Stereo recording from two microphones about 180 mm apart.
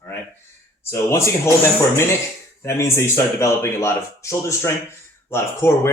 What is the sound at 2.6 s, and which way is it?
Speech, 15° left (ahead or behind).